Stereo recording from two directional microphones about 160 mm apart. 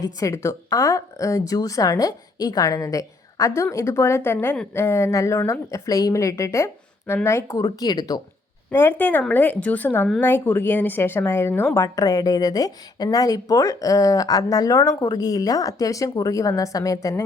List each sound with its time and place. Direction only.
0.0 s speech: 20° left (ahead or behind)